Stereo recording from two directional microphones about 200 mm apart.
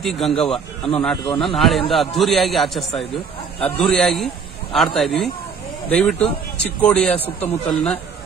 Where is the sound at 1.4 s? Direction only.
Centre (ahead or behind).